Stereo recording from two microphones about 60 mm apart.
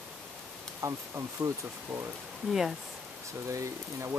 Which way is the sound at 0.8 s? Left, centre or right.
Right.